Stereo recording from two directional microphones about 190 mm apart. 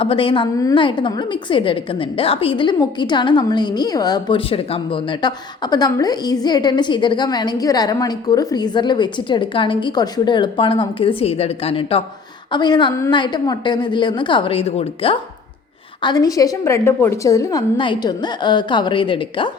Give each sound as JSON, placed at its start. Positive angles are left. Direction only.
{"t": 0.0, "sound": "a woman's voice", "side_deg": 30}